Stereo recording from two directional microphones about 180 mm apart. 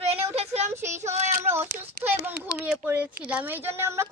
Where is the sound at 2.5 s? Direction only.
10° right (ahead or behind).